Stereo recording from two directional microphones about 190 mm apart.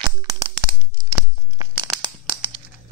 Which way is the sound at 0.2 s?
20° right (ahead or behind).